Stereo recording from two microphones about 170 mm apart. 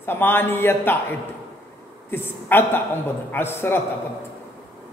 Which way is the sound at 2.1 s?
10° left (ahead or behind).